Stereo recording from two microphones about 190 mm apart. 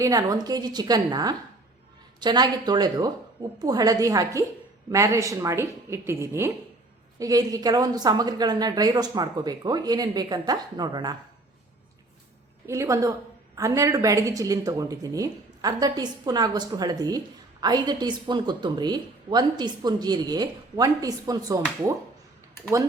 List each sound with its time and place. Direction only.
0.0 s a woman's voice: 20° right (ahead or behind)
12.6 s a woman's voice: 15° right (ahead or behind)